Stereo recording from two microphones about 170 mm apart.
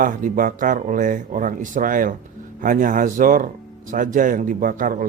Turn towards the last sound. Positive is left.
turn(degrees=-50)  # may be behind; listen again after turning